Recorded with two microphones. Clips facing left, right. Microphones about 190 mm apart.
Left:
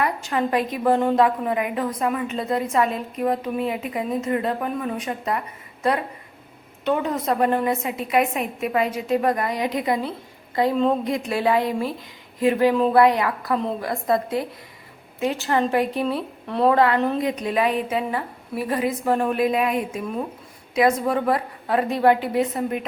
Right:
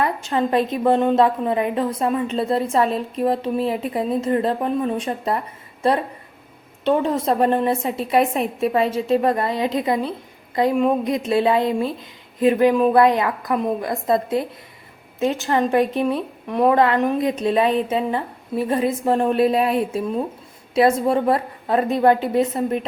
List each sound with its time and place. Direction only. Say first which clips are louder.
0.0 s a woman's voice: right 2 dB; 25° right (ahead or behind)
6.8 s a woman's voice: right 4 dB; 30° right (ahead or behind)